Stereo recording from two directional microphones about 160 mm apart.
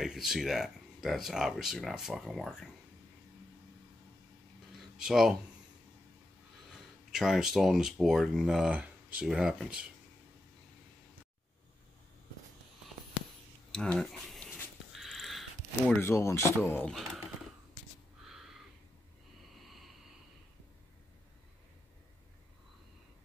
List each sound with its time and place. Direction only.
0.0 s speech: 5° right (ahead or behind)
4.7 s speech: 5° right (ahead or behind)
7.1 s speech: 5° right (ahead or behind)
13.7 s speech: 5° left (ahead or behind)
14.9 s mechanisms: centre (ahead or behind)
16.0 s speech: 15° left (ahead or behind)
16.8 s speech: centre (ahead or behind)
18.3 s a sound: centre (ahead or behind)